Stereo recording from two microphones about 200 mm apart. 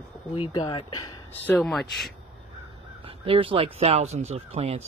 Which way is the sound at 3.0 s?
25° right (ahead or behind).